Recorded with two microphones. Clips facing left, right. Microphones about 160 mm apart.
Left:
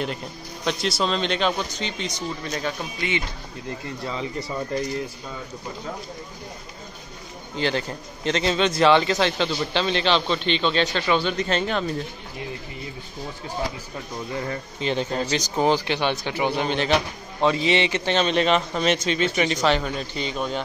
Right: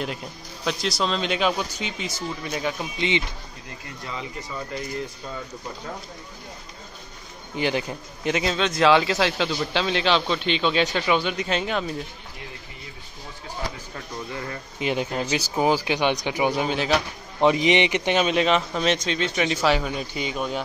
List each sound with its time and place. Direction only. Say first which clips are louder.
0.7 s a man's voice: left 1 dB; centre (ahead or behind); by 3.3 s 20° right (ahead or behind)
4.0 s speech: left 3 dB; 35° left (ahead or behind)
7.5 s a man's voice: even; 15° right (ahead or behind)
8.5 s speech: left 1 dB; centre (ahead or behind)
14.8 s a man's voice: even; 10° right (ahead or behind)
17.4 s a man's voice: right 2 dB; 15° right (ahead or behind)